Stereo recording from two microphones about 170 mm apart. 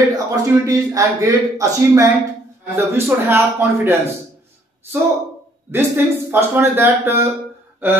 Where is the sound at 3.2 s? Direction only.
15° right (ahead or behind).